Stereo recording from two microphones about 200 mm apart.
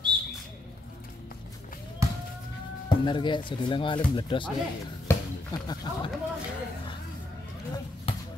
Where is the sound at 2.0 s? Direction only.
15° right (ahead or behind).